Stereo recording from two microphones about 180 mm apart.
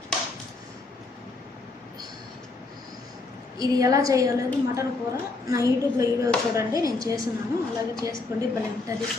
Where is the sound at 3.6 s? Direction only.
20° right (ahead or behind).